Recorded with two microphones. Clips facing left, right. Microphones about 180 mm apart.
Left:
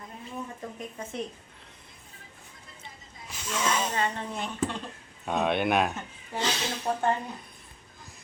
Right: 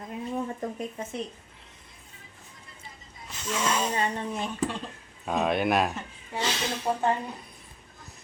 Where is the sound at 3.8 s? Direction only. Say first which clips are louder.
Right 2 dB; 15° right (ahead or behind).